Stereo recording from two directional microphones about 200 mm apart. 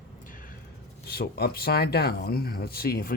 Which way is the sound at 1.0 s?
50° left (ahead or behind).